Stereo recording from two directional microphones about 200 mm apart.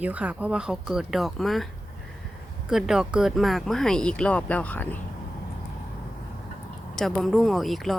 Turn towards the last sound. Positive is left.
turn(degrees=0)  # may be behind; listen again after turning